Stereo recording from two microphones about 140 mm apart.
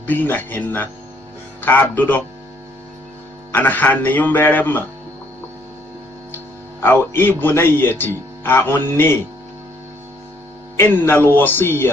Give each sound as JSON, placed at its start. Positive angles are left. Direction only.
{"t": 0.0, "sound": "speech", "side_deg": 15}
{"t": 3.5, "sound": "speech", "side_deg": 15}
{"t": 6.8, "sound": "speech", "side_deg": 15}
{"t": 10.8, "sound": "speech", "side_deg": 15}